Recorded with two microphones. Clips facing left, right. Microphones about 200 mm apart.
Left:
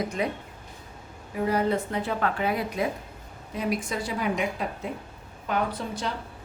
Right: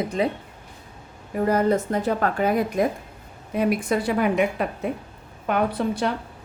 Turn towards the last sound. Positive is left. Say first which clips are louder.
# right 8 dB
turn(degrees=-60)  # may be behind; listen again after turning